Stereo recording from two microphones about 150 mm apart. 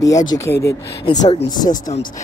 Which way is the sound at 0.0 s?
25° left (ahead or behind).